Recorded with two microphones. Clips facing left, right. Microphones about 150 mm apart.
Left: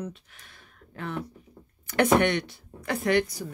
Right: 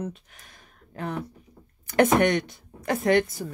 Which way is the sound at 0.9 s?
40° right (ahead or behind).